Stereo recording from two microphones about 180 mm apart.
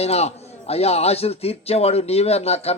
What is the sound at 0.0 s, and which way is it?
A man's voice, 35° left (ahead or behind).